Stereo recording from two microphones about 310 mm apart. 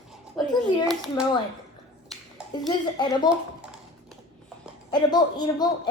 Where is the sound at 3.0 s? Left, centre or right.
Centre.